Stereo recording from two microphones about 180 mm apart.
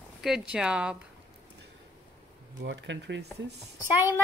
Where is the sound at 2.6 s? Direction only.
85° right.